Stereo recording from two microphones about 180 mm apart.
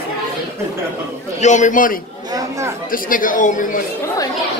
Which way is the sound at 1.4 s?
40° left (ahead or behind).